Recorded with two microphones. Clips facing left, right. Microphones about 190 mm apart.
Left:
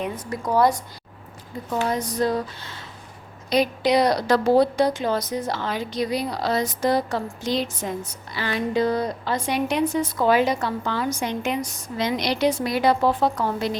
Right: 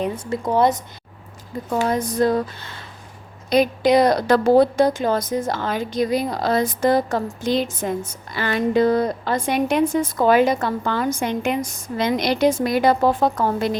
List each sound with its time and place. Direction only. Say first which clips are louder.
0.0 s speech: right 4 dB; 25° right (ahead or behind)
1.9 s a woman's voice: right 5 dB; 50° right (ahead or behind)